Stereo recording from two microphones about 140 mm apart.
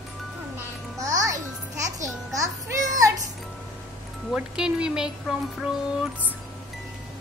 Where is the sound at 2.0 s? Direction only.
25° right (ahead or behind).